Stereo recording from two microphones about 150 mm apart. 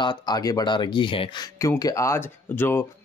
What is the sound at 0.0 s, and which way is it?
Speech, 30° left (ahead or behind).